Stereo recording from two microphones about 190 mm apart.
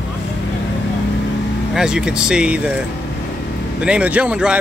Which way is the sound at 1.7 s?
5° right (ahead or behind).